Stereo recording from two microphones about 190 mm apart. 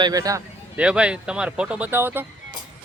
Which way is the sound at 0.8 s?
5° right (ahead or behind).